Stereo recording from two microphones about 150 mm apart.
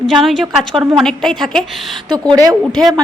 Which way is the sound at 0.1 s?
Centre (ahead or behind).